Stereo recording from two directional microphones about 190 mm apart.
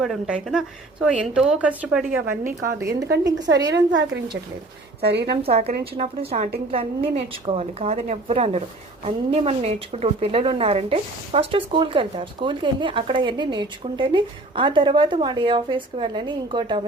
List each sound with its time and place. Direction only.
0.0 s a woman's voice: centre (ahead or behind)
2.4 s a woman's voice: 50° right (ahead or behind)
2.6 s a woman's voice: 15° right (ahead or behind)
3.7 s speech: 65° right (ahead or behind)
5.8 s a woman's voice: 35° right (ahead or behind)